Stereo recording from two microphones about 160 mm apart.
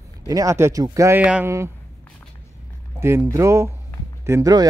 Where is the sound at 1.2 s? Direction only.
5° right (ahead or behind).